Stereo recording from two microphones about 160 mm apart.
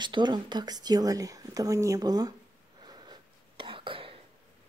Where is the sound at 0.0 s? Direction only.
30° right (ahead or behind).